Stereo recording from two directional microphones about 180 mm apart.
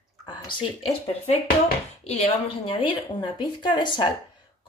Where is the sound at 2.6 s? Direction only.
25° left (ahead or behind).